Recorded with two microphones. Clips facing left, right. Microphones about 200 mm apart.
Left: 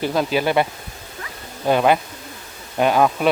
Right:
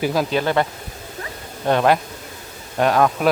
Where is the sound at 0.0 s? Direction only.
5° right (ahead or behind).